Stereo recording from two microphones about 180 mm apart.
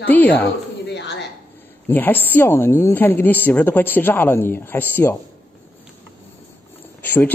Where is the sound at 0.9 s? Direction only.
75° left (ahead or behind).